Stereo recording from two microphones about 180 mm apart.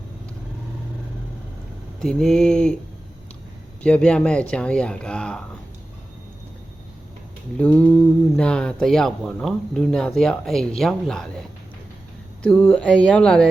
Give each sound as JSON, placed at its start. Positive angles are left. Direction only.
{"t": 2.0, "sound": "speech", "side_deg": 5}
{"t": 3.8, "sound": "speech", "side_deg": 5}
{"t": 7.5, "sound": "speech", "side_deg": 5}
{"t": 12.4, "sound": "speech", "side_deg": 10}